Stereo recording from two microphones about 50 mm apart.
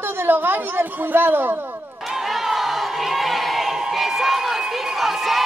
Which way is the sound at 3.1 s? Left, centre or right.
Centre.